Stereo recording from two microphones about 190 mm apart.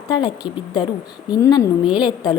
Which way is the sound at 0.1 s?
20° left (ahead or behind).